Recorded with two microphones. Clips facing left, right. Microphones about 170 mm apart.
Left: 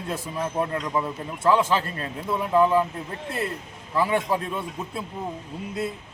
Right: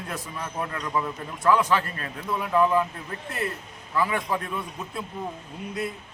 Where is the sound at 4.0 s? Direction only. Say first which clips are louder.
Left 3 dB; 30° left (ahead or behind).